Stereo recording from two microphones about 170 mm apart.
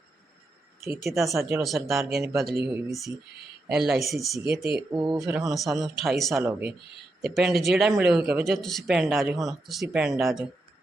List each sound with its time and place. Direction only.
0.9 s speech: centre (ahead or behind)
1.4 s speech: 10° right (ahead or behind)
1.6 s speech: centre (ahead or behind)
4.9 s speech: 25° right (ahead or behind)
5.3 s speech: centre (ahead or behind)